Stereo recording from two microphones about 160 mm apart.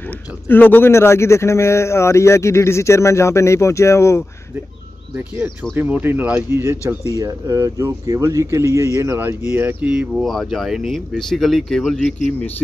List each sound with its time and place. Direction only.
0.5 s a man's voice: 10° left (ahead or behind)
5.3 s speech: 10° right (ahead or behind)